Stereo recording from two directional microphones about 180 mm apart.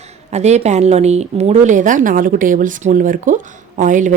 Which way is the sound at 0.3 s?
40° right (ahead or behind).